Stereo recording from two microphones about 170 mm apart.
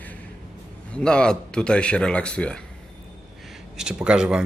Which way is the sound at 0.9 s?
5° left (ahead or behind).